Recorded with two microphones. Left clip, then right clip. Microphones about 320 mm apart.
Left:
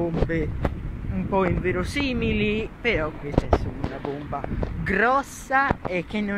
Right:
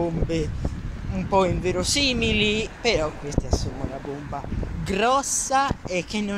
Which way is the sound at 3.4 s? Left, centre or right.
Left.